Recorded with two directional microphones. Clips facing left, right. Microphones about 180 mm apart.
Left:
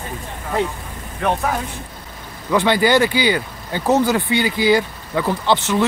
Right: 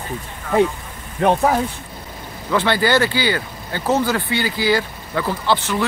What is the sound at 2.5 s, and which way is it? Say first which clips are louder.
Speech: left 2 dB; 15° left (ahead or behind).